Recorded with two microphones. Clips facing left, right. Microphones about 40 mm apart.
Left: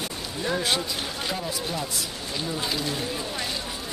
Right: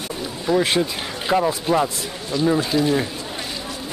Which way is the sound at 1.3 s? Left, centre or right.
Right.